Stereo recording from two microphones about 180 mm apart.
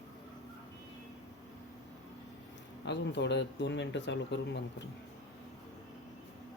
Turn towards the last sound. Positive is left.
turn(degrees=70)  # may be behind; listen again after turning